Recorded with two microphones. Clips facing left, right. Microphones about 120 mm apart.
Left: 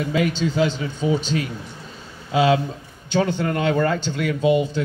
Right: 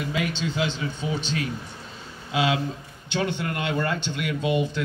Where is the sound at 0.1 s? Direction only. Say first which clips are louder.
Left 8 dB; 40° left (ahead or behind).